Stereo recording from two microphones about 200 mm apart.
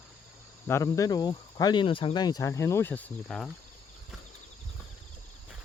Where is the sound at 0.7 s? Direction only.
15° left (ahead or behind).